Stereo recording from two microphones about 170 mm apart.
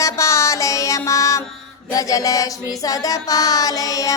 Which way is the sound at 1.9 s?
20° left (ahead or behind).